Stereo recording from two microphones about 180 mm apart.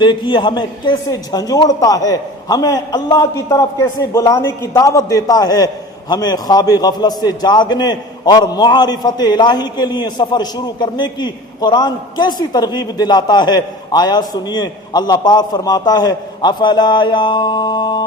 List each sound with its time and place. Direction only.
0.0 s a man's voice: 25° left (ahead or behind)